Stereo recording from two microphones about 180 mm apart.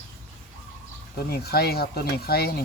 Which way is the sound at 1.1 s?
60° left (ahead or behind).